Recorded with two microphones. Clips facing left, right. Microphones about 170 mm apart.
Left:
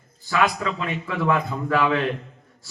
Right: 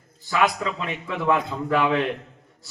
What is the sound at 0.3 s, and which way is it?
A man's voice, 20° right (ahead or behind).